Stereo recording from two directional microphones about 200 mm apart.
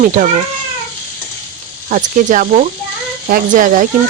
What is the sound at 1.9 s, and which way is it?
Speech, 40° right (ahead or behind).